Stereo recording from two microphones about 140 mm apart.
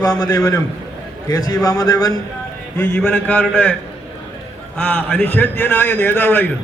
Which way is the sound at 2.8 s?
10° left (ahead or behind).